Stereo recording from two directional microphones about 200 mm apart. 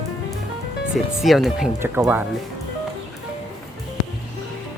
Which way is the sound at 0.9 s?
Centre (ahead or behind).